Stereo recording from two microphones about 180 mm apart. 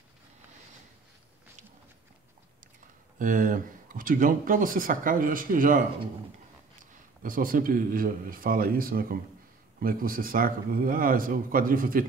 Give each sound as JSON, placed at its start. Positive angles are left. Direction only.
{"t": 3.2, "sound": "speech", "side_deg": -50}
{"t": 7.2, "sound": "speech", "side_deg": -50}